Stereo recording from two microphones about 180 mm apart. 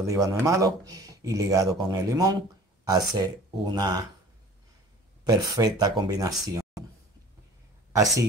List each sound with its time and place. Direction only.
0.0 s speech: 15° right (ahead or behind)
5.2 s speech: 20° right (ahead or behind)
7.9 s speech: 20° right (ahead or behind)